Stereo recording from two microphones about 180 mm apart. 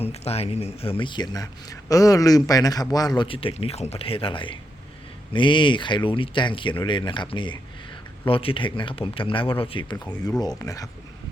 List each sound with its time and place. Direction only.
0.0 s speech: 35° left (ahead or behind); by 10.8 s 20° left (ahead or behind)